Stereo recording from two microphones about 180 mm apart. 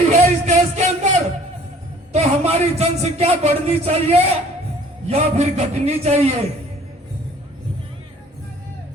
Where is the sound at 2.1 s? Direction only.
35° right (ahead or behind).